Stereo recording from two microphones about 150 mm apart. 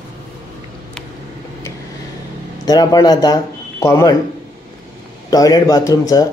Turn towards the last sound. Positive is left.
turn(degrees=25)  # may be behind; listen again after turning